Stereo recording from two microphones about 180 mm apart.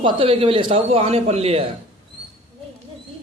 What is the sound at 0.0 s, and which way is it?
A man's voice, 30° right (ahead or behind).